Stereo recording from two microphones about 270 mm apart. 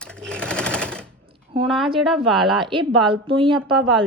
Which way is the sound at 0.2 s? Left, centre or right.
Centre.